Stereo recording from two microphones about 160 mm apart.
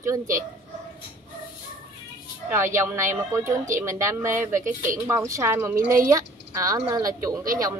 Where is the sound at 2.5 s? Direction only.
15° right (ahead or behind).